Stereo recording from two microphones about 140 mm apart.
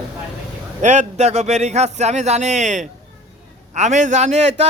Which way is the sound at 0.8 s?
55° right (ahead or behind).